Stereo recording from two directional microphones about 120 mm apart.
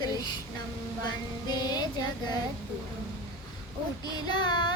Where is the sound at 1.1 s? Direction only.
35° left (ahead or behind).